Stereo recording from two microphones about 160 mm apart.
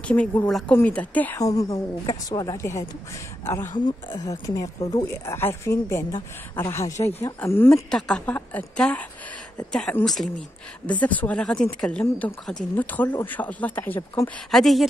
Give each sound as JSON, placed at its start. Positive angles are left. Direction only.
{"t": 0.1, "sound": "a woman's voice", "side_deg": 10}
{"t": 1.4, "sound": "a woman's voice", "side_deg": 20}
{"t": 3.7, "sound": "a woman's voice", "side_deg": 25}
{"t": 14.5, "sound": "a woman's voice", "side_deg": 0}